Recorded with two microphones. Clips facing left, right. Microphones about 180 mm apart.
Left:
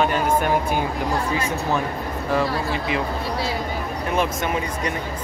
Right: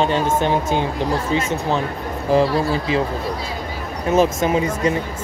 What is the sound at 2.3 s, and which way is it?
Speech, 30° right (ahead or behind).